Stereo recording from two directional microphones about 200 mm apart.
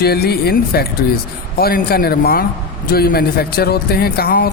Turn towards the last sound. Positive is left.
turn(degrees=50)  # may be behind; listen again after turning